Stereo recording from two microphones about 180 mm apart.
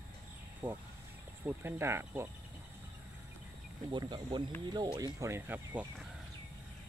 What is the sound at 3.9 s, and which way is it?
Speech, 25° right (ahead or behind).